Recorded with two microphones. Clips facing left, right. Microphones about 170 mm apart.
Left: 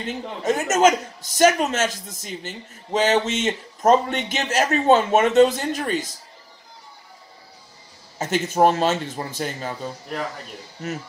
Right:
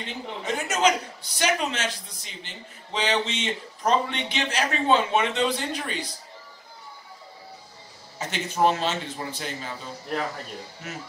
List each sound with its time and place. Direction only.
0.0 s a man's voice: 45° left (ahead or behind)
8.2 s a man's voice: 45° left (ahead or behind)